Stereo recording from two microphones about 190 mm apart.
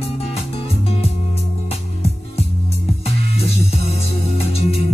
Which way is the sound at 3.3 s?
35° left (ahead or behind).